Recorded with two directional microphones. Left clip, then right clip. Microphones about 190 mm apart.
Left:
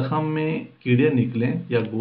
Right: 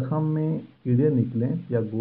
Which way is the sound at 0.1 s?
30° right (ahead or behind).